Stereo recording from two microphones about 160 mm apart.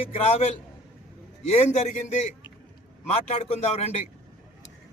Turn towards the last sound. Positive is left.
turn(degrees=40)  # may be behind; listen again after turning